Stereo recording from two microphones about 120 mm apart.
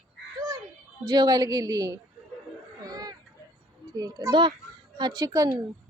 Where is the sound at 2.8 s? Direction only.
30° right (ahead or behind).